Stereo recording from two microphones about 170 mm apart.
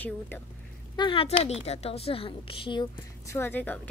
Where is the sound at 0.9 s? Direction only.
30° left (ahead or behind).